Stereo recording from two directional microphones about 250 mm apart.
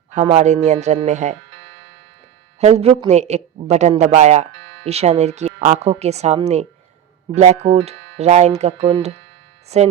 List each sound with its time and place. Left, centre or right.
0.1 s a man's voice: right
2.6 s a man's voice: right